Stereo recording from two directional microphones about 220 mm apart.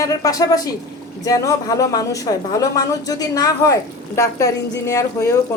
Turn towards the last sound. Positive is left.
turn(degrees=15)  # may be behind; listen again after turning